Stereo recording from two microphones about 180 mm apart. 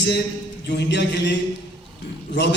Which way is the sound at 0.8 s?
70° left (ahead or behind).